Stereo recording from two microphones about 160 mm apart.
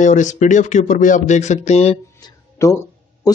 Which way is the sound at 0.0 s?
50° left (ahead or behind).